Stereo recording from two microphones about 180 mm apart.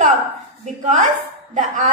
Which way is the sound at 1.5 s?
45° right (ahead or behind).